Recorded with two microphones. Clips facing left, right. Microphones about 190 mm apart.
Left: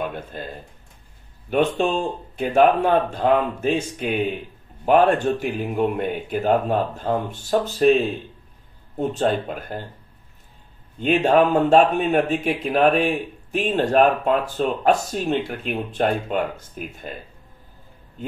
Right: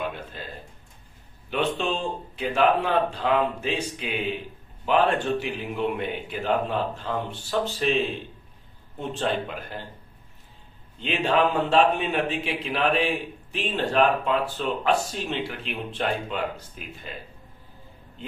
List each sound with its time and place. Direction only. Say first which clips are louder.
0.0 s a sound: left 4 dB; 50° left (ahead or behind)
1.5 s a man's voice: left 6 dB; 50° left (ahead or behind)
11.0 s a man's voice: left 6 dB; 45° left (ahead or behind)